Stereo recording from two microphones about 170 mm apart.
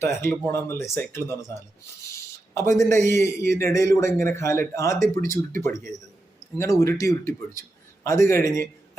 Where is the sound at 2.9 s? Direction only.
15° left (ahead or behind).